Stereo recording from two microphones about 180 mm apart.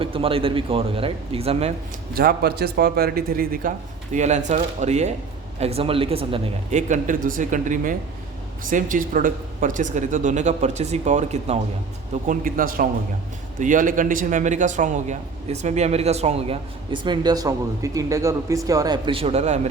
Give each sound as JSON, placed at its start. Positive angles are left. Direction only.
{"t": 0.0, "sound": "a man's voice", "side_deg": -30}
{"t": 2.1, "sound": "a man's voice", "side_deg": -60}
{"t": 12.3, "sound": "a man's voice", "side_deg": -50}